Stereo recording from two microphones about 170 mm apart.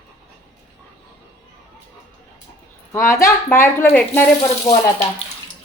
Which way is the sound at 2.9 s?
15° left (ahead or behind).